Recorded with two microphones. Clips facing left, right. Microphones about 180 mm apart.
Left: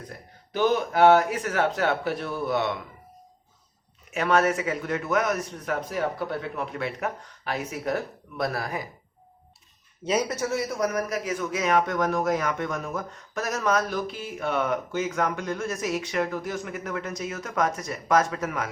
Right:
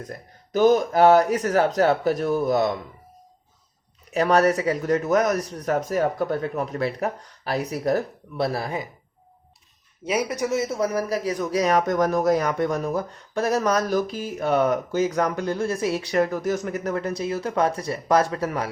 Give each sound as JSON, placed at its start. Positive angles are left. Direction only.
{"t": 0.5, "sound": "a man's voice", "side_deg": -40}
{"t": 4.1, "sound": "a man's voice", "side_deg": -35}
{"t": 10.0, "sound": "a man's voice", "side_deg": -10}